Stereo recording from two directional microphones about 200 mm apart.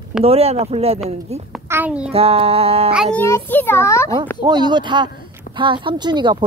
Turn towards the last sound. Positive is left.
turn(degrees=-20)  # may be behind; listen again after turning